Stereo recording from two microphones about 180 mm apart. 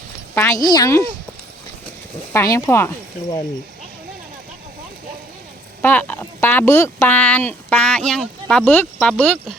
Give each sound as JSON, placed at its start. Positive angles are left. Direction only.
{"t": 0.3, "sound": "speech", "side_deg": 15}
{"t": 2.3, "sound": "speech", "side_deg": 15}
{"t": 5.8, "sound": "speech", "side_deg": 10}